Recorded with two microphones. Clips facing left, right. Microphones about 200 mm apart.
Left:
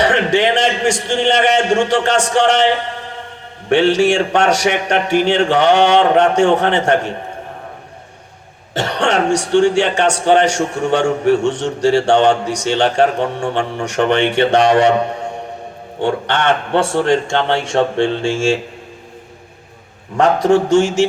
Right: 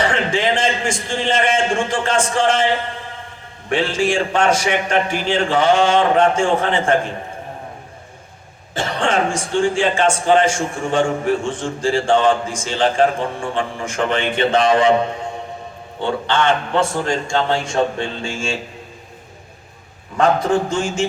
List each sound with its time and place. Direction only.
0.0 s speech: 75° left (ahead or behind)
8.7 s speech: 70° left (ahead or behind)
16.3 s speech: 70° left (ahead or behind)
17.9 s speech: 30° left (ahead or behind)
20.1 s speech: 75° left (ahead or behind)